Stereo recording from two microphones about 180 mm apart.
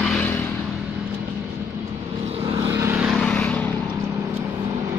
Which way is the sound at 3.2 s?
5° left (ahead or behind).